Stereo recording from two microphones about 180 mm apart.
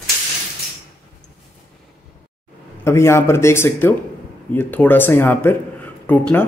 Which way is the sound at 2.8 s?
15° left (ahead or behind).